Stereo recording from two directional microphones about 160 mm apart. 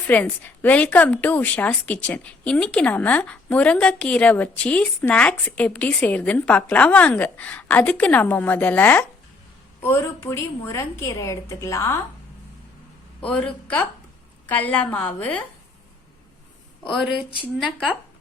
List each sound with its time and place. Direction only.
0.1 s a woman's voice: 10° left (ahead or behind)
13.2 s a woman's voice: 5° left (ahead or behind)
17.1 s speech: 30° left (ahead or behind)
17.7 s speech: 10° right (ahead or behind)